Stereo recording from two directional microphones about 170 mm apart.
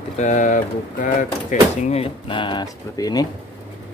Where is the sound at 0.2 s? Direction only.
45° left (ahead or behind); by 3.3 s 20° left (ahead or behind).